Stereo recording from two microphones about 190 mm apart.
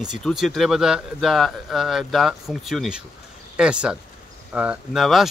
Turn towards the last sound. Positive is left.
turn(degrees=0)  # may be behind; listen again after turning